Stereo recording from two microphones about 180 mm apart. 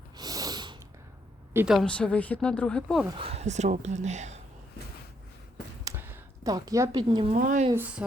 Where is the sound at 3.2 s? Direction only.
35° right (ahead or behind).